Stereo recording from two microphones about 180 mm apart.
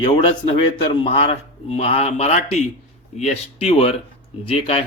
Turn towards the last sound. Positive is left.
turn(degrees=30)  # may be behind; listen again after turning